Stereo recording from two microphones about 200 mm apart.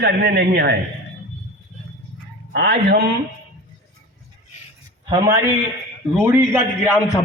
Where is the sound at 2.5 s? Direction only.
55° right (ahead or behind).